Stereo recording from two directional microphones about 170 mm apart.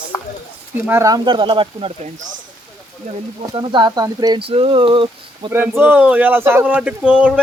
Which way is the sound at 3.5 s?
25° right (ahead or behind).